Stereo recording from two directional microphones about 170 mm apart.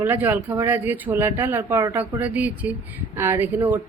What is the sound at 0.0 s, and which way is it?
A woman's voice, 10° right (ahead or behind).